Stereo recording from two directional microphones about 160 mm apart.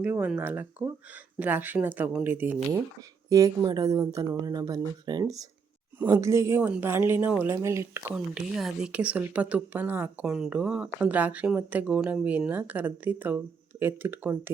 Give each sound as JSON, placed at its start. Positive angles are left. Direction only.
{"t": 0.0, "sound": "speech", "side_deg": -10}
{"t": 8.1, "sound": "speech", "side_deg": 0}